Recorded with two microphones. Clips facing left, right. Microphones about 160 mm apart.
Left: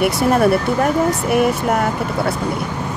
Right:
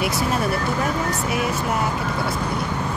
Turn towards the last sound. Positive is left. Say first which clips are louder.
# left 7 dB
turn(degrees=60)  # may be behind; listen again after turning